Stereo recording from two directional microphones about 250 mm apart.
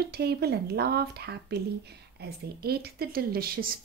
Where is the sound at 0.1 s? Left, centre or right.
Right.